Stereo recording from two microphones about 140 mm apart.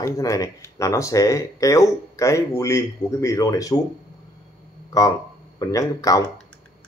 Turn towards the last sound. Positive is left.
turn(degrees=25)  # may be behind; listen again after turning